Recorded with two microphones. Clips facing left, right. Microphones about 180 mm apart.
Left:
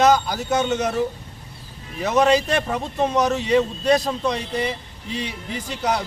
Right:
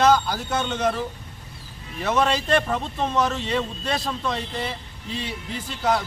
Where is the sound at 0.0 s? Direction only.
15° left (ahead or behind).